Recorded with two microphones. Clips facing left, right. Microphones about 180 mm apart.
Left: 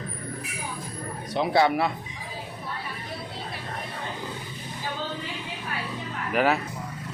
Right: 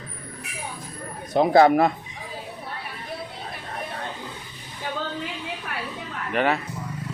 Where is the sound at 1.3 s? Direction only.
45° right (ahead or behind).